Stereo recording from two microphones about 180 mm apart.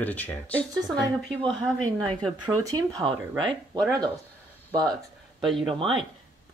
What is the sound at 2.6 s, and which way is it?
Speech, 20° right (ahead or behind).